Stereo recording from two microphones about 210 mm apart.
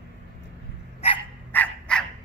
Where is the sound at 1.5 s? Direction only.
5° left (ahead or behind).